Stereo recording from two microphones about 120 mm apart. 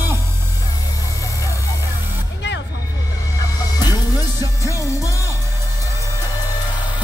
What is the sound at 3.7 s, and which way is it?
Music, 30° left (ahead or behind).